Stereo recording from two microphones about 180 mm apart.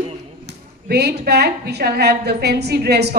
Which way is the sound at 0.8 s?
65° right (ahead or behind).